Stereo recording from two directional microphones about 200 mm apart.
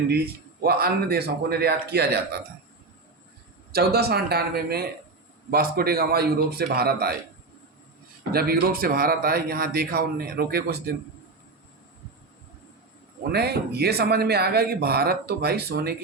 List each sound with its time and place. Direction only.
0.6 s speech: 50° right (ahead or behind)
3.7 s speech: 50° right (ahead or behind)
8.3 s speech: 50° right (ahead or behind)
13.3 s speech: 55° right (ahead or behind)